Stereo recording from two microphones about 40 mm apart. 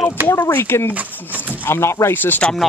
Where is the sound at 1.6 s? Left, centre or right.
Left.